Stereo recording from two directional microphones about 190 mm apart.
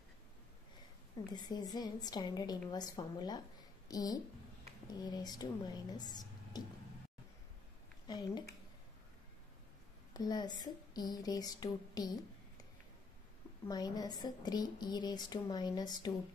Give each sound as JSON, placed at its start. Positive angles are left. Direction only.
{"t": 1.3, "sound": "a woman's voice", "side_deg": 20}
{"t": 8.1, "sound": "a woman's voice", "side_deg": 20}
{"t": 10.1, "sound": "a woman's voice", "side_deg": 20}
{"t": 13.7, "sound": "a woman's voice", "side_deg": 20}